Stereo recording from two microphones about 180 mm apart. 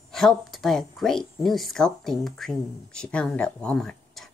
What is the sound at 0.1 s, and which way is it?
A woman's voice, centre (ahead or behind).